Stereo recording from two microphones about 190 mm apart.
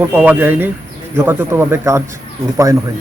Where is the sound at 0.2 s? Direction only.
10° right (ahead or behind).